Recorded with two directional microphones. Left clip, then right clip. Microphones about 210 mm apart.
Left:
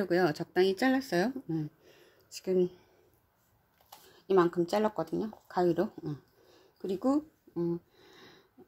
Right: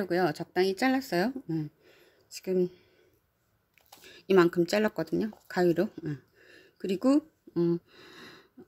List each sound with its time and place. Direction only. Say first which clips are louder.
0.0 s speech: even; 5° right (ahead or behind)
4.3 s speech: right 3 dB; 35° right (ahead or behind)